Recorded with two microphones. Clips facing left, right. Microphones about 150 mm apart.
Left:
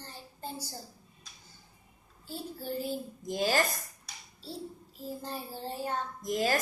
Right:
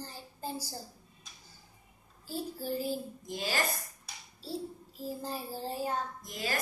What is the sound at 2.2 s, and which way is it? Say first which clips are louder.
Child singing: right 2 dB; 5° right (ahead or behind).